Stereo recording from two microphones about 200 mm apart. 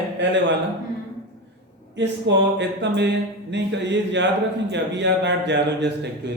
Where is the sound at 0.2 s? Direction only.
65° right (ahead or behind).